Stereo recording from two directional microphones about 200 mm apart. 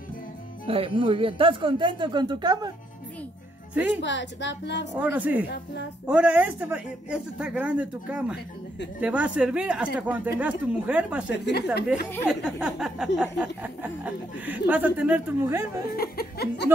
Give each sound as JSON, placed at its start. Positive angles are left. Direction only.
{"t": 0.7, "sound": "speech", "side_deg": -25}
{"t": 4.0, "sound": "speech", "side_deg": 60}
{"t": 4.9, "sound": "a man's voice", "side_deg": -5}
{"t": 11.3, "sound": "speech", "side_deg": 55}
{"t": 12.3, "sound": "a man's voice", "side_deg": -5}
{"t": 16.0, "sound": "laughter", "side_deg": 50}